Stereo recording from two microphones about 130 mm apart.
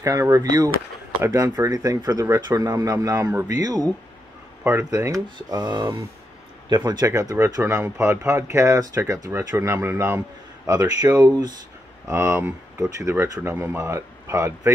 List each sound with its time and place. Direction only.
0.0 s speech: 25° right (ahead or behind)
4.6 s speech: 20° right (ahead or behind)
6.9 s speech: 30° right (ahead or behind)
10.7 s speech: 30° right (ahead or behind)
12.1 s speech: 20° right (ahead or behind)